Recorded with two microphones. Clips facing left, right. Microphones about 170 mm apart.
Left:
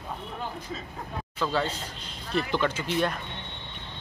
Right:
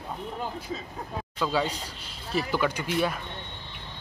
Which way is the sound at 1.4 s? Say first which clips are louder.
Right 1 dB; 10° right (ahead or behind).